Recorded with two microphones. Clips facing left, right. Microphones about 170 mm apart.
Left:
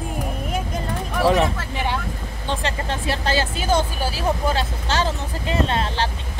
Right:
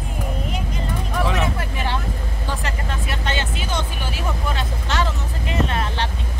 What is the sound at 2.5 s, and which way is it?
Speech, 30° left (ahead or behind).